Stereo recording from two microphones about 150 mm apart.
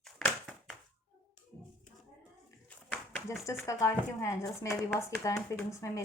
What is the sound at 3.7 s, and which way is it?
Speech, 20° left (ahead or behind).